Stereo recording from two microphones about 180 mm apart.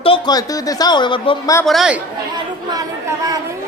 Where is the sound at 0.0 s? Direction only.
25° left (ahead or behind).